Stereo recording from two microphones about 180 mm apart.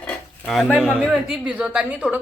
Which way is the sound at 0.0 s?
5° left (ahead or behind).